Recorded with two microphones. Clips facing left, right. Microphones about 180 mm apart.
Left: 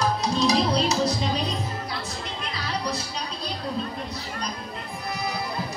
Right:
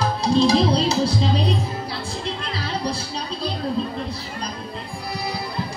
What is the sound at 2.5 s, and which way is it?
Music, 30° right (ahead or behind).